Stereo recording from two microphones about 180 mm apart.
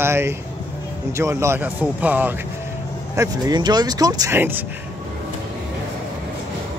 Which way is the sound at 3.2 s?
20° right (ahead or behind).